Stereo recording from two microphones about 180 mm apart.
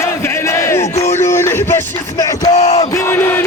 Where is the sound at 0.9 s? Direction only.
40° left (ahead or behind).